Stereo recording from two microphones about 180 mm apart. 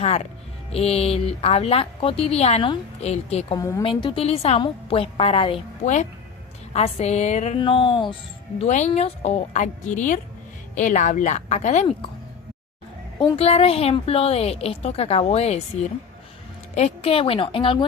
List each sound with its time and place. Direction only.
0.7 s a woman's voice: 35° left (ahead or behind)
3.6 s a woman's voice: 20° left (ahead or behind)
3.8 s a woman's voice: 30° left (ahead or behind)
5.8 s a woman's voice: 40° left (ahead or behind)
7.6 s speech: 30° left (ahead or behind)
8.5 s a woman's voice: 40° left (ahead or behind)
13.1 s a woman's voice: 30° left (ahead or behind)
16.7 s a woman's voice: 35° left (ahead or behind)